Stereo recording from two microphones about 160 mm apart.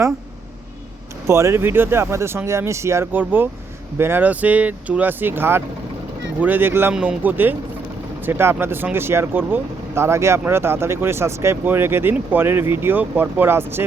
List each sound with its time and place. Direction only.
1.3 s speech: 15° right (ahead or behind)